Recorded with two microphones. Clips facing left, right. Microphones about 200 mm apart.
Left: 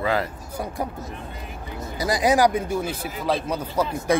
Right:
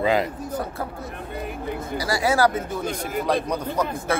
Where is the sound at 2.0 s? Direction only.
20° left (ahead or behind).